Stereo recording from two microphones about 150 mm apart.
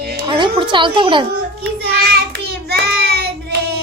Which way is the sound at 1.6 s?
90° right.